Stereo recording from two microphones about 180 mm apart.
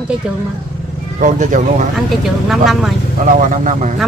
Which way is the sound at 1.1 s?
45° right (ahead or behind).